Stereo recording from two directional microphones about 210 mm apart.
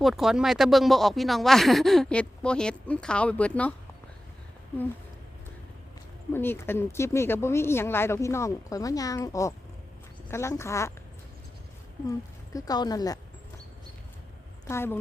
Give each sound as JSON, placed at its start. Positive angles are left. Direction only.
{"t": 0.0, "sound": "speech", "side_deg": 0}
{"t": 6.3, "sound": "speech", "side_deg": 10}
{"t": 12.5, "sound": "speech", "side_deg": 20}
{"t": 14.7, "sound": "speech", "side_deg": 10}